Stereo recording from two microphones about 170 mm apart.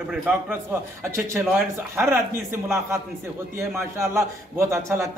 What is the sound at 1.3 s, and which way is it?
Speech, 15° right (ahead or behind).